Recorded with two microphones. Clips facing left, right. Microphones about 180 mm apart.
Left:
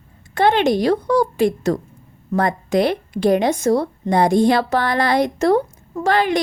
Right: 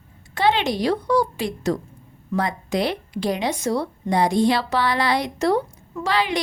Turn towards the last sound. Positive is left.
turn(degrees=50)  # may be behind; listen again after turning